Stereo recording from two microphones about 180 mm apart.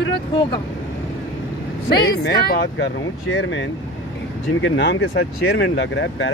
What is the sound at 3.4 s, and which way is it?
Speech, 90° left.